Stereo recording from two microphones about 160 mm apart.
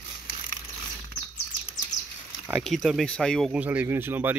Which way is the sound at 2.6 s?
Centre (ahead or behind).